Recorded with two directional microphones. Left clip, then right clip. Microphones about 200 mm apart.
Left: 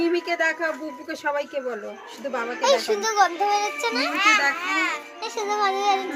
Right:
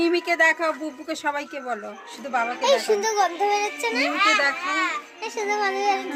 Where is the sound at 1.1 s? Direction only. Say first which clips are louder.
Left 2 dB; 50° right (ahead or behind).